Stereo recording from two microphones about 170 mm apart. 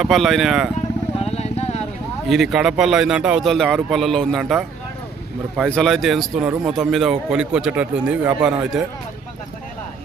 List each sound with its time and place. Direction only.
0.0 s a man's voice: centre (ahead or behind)
1.2 s vehicle: 40° left (ahead or behind)
2.2 s a man's voice: centre (ahead or behind)